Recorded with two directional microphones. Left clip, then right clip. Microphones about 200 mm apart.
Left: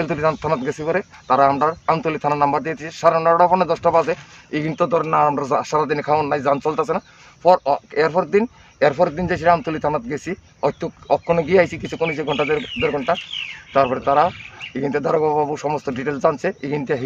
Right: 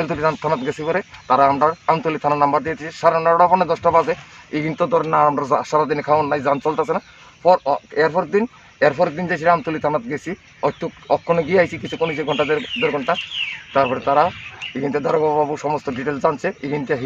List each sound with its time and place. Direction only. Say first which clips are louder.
0.0 s a man's voice: even; 25° left (ahead or behind)
4.1 s speech: even; 5° left (ahead or behind)
4.7 s a man's voice: right 1 dB; 15° left (ahead or behind)
11.7 s speech: even; centre (ahead or behind)
12.2 s a man's voice: right 1 dB; 20° left (ahead or behind)
15.5 s speech: right 1 dB; 5° left (ahead or behind)
16.3 s a man's voice: left 1 dB; 25° left (ahead or behind)